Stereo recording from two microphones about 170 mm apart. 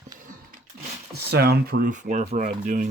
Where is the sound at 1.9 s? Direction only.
45° right (ahead or behind).